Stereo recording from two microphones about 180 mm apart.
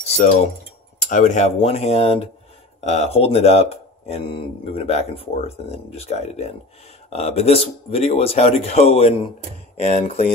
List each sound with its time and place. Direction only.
0.0 s keys jangling: 35° left (ahead or behind)
1.1 s speech: 40° left (ahead or behind)